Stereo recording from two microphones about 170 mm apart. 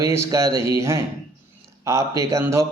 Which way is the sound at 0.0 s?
20° right (ahead or behind).